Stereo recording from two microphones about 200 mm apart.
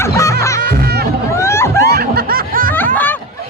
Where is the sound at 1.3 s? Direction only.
15° left (ahead or behind).